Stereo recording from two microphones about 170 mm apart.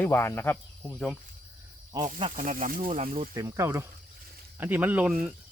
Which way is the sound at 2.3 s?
45° right (ahead or behind).